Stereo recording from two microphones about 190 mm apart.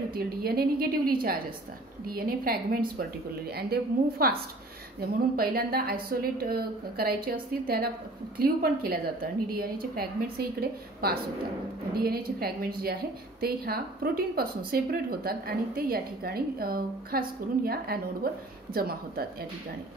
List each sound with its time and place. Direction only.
0.1 s a woman's voice: 55° right (ahead or behind)
2.1 s a woman's voice: 50° right (ahead or behind)